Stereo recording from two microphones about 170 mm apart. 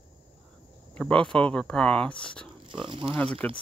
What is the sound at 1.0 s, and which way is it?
Speech, 5° left (ahead or behind).